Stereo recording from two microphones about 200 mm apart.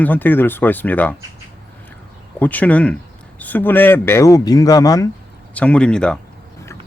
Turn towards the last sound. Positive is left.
turn(degrees=5)  # may be behind; listen again after turning